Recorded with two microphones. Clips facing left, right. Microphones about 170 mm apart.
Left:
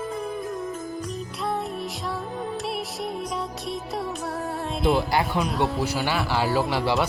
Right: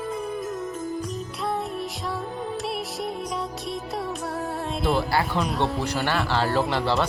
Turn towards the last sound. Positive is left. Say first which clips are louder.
# even
turn(degrees=5)  # may be behind; listen again after turning